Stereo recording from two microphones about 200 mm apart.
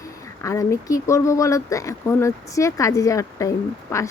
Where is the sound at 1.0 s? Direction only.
15° left (ahead or behind).